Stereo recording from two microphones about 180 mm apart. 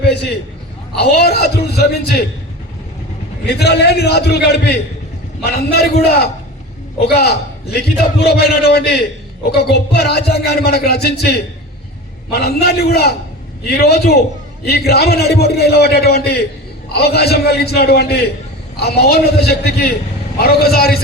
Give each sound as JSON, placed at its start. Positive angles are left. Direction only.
{"t": 0.0, "sound": "a man's voice", "side_deg": 65}
{"t": 3.4, "sound": "a man's voice", "side_deg": 65}